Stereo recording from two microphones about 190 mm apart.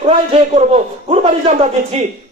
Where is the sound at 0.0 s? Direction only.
35° right (ahead or behind).